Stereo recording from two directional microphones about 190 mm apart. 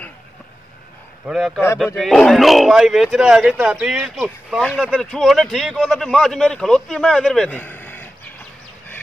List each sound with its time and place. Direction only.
1.2 s speech: centre (ahead or behind)